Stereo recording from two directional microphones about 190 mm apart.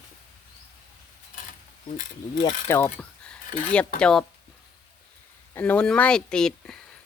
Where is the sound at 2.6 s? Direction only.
10° left (ahead or behind).